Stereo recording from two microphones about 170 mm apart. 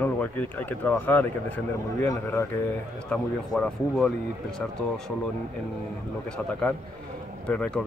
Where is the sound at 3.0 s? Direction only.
5° left (ahead or behind).